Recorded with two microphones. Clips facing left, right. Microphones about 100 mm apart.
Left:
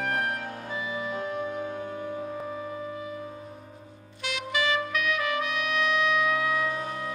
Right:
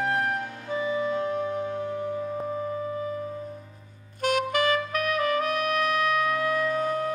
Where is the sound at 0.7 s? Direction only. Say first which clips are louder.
Right 7 dB; 40° right (ahead or behind).